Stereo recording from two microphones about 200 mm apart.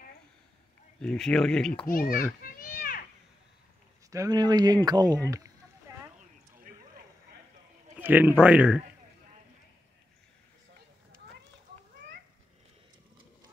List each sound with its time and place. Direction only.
1.0 s speech: 5° left (ahead or behind)
1.9 s a child's voice: 45° left (ahead or behind)
2.4 s children playing: 45° left (ahead or behind)
4.1 s a man's voice: 20° right (ahead or behind)
8.0 s a man's voice: 10° right (ahead or behind)